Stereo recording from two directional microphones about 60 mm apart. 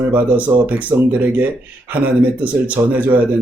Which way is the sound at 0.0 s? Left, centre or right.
Right.